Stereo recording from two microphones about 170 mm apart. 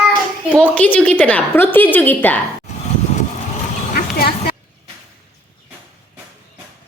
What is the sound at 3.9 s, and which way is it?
Vehicle, 65° left (ahead or behind).